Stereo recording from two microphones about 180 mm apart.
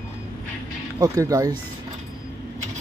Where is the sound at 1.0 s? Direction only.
20° right (ahead or behind).